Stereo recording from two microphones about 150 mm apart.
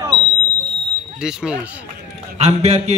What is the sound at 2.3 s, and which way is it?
Speech, 45° right (ahead or behind).